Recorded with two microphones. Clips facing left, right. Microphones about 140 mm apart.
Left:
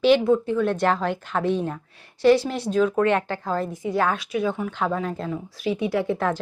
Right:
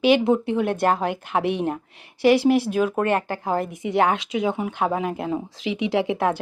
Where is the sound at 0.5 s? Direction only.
15° right (ahead or behind).